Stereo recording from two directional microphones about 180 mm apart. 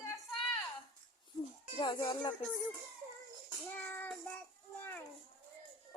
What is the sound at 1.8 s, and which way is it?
Speech, 25° left (ahead or behind).